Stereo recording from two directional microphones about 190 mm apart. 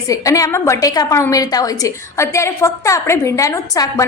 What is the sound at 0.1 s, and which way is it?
A woman's voice, 15° left (ahead or behind).